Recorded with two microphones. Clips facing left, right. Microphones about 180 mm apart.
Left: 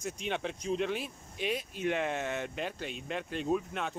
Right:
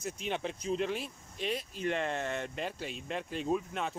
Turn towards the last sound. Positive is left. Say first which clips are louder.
# left 1 dB
turn(degrees=0)  # may be behind; listen again after turning